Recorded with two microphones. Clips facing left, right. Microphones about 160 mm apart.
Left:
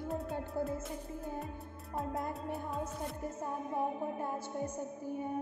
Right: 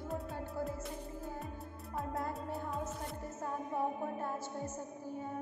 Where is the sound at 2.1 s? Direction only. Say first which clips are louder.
Even; 20° left (ahead or behind).